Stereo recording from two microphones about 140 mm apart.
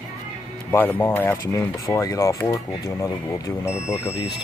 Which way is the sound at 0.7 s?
15° left (ahead or behind).